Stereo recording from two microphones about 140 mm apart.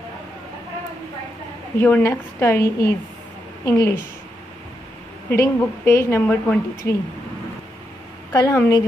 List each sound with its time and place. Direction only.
1.8 s a woman's voice: 15° left (ahead or behind)
5.3 s a woman's voice: 20° left (ahead or behind)
6.2 s a woman's voice: 10° left (ahead or behind)
6.8 s a woman's voice: 20° left (ahead or behind)
8.3 s a woman's voice: 20° left (ahead or behind)